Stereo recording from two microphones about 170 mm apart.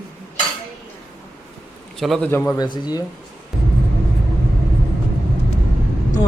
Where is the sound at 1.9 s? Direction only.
Centre (ahead or behind).